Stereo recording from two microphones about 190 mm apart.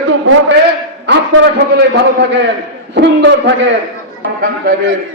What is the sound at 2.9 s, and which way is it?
Speech, 50° right (ahead or behind).